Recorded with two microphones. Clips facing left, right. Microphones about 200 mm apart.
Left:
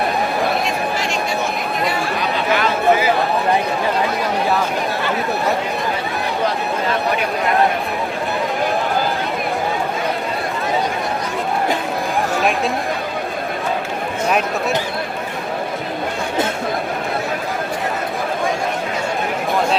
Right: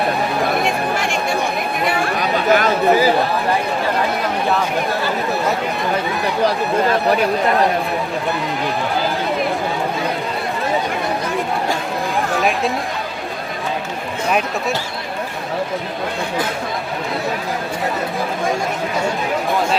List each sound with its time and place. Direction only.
0.6 s a sound: 55° right (ahead or behind)
2.3 s chatter: 45° right (ahead or behind)
12.4 s speech: centre (ahead or behind)